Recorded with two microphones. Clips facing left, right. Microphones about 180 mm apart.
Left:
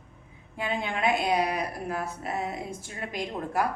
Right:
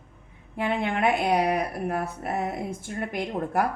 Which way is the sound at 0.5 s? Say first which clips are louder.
Right 4 dB; 60° right (ahead or behind).